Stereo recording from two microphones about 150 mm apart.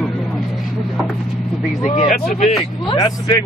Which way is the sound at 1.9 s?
50° left (ahead or behind).